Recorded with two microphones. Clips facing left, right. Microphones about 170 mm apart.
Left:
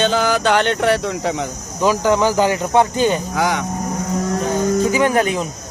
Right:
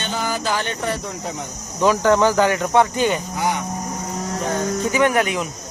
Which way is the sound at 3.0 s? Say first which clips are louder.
Left 3 dB; 30° left (ahead or behind).